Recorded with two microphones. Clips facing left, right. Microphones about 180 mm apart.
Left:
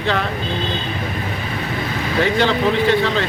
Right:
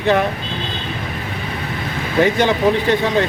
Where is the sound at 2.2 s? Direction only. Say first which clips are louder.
Right 3 dB; 15° right (ahead or behind).